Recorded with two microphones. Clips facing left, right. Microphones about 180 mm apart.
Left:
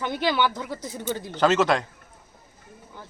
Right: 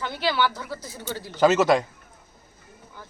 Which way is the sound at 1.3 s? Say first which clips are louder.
Right 3 dB; 10° right (ahead or behind).